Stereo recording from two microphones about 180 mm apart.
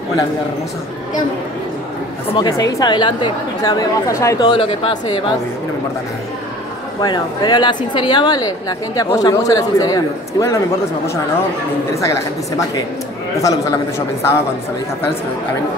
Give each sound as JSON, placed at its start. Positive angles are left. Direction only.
{"t": 2.3, "sound": "a woman's voice", "side_deg": 20}
{"t": 7.0, "sound": "a woman's voice", "side_deg": 25}
{"t": 11.9, "sound": "a woman's voice", "side_deg": 15}